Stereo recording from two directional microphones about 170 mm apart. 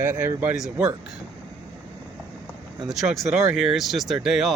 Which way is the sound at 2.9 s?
Centre (ahead or behind).